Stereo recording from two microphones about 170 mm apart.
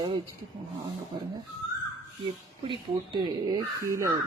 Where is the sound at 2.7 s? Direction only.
30° right (ahead or behind).